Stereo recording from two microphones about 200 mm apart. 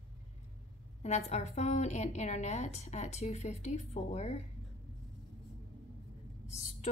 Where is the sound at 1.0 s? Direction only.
35° left (ahead or behind).